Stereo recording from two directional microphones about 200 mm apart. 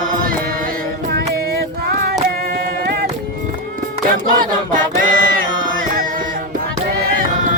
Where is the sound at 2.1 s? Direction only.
45° right (ahead or behind).